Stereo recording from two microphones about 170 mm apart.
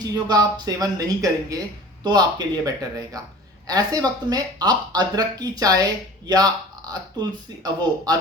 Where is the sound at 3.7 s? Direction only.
20° right (ahead or behind).